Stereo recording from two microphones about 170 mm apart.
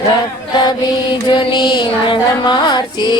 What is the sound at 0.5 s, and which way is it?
Mantra, 25° left (ahead or behind).